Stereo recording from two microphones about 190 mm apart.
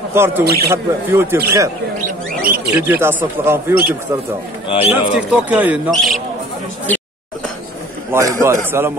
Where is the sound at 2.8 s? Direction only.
10° right (ahead or behind).